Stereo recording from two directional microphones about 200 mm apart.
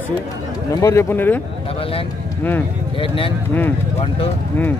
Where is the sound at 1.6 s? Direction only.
30° left (ahead or behind).